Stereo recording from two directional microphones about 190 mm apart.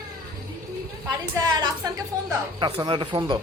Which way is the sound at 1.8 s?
20° right (ahead or behind).